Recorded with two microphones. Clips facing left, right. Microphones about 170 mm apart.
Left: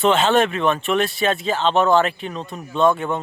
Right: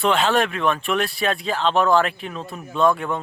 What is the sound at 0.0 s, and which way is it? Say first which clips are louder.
Speech: left 3 dB; centre (ahead or behind).